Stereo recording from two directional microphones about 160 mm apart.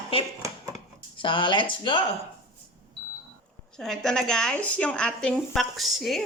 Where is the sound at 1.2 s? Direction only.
30° left (ahead or behind).